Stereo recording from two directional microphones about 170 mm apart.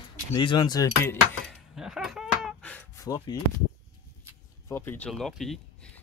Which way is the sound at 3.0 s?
20° left (ahead or behind).